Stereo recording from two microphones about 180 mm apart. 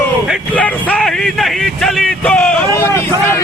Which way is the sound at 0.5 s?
5° left (ahead or behind).